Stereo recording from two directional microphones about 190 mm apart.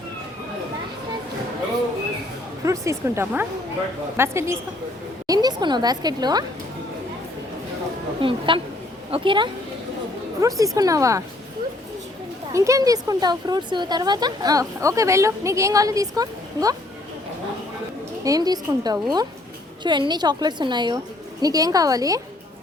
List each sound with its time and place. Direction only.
2.6 s speech: 15° right (ahead or behind)
8.2 s a woman's voice: 30° right (ahead or behind)
12.5 s speech: 15° right (ahead or behind)
18.2 s speech: 20° right (ahead or behind)